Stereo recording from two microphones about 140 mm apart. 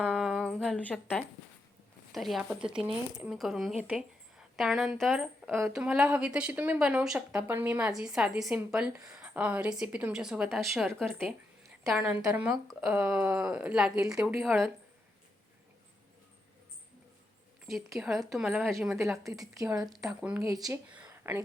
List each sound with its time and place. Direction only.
0.0 s a sound: centre (ahead or behind)
2.1 s a woman's voice: centre (ahead or behind)
11.9 s a woman's voice: 10° right (ahead or behind)
17.7 s a woman's voice: centre (ahead or behind)
19.1 s a woman's voice: 25° right (ahead or behind)
20.1 s speech: 10° right (ahead or behind)
20.9 s a sound: 10° right (ahead or behind)